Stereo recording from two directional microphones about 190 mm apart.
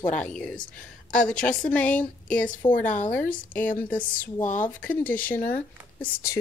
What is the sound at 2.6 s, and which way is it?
Speech, 25° left (ahead or behind).